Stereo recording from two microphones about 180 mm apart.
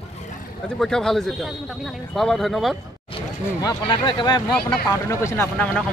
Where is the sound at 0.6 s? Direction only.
5° left (ahead or behind).